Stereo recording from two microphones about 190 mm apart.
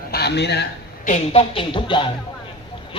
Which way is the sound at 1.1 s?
35° left (ahead or behind).